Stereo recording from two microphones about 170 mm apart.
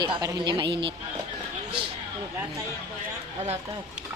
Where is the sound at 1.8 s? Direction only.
30° right (ahead or behind).